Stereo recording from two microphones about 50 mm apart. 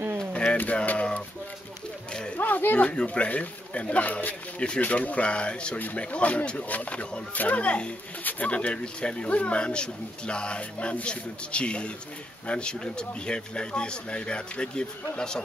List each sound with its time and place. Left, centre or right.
0.3 s a sound: left
0.6 s speech: left
2.1 s a sound: left
2.4 s speech: left
2.9 s speech: left
5.8 s speech: left
6.1 s speech: left